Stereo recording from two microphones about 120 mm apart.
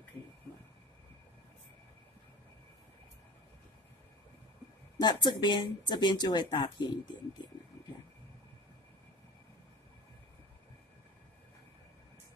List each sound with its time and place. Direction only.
4.9 s speech: 35° left (ahead or behind)